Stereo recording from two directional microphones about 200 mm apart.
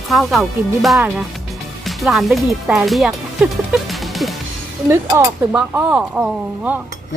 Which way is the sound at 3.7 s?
Centre (ahead or behind).